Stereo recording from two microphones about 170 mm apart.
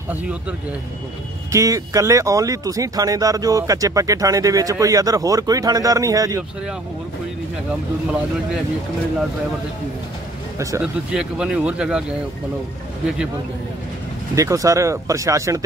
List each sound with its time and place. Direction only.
0.1 s speech: 10° right (ahead or behind)
1.5 s speech: 20° right (ahead or behind)
10.8 s speech: 5° right (ahead or behind)
14.3 s speech: 20° right (ahead or behind)